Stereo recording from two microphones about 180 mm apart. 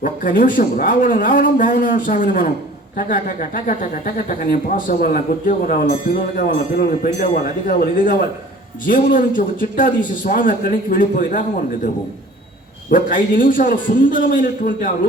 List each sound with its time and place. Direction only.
0.0 s speech: 50° left (ahead or behind)
12.9 s speech: 50° left (ahead or behind)